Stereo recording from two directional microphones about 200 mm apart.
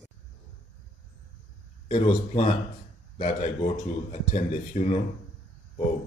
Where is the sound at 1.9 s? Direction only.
25° left (ahead or behind).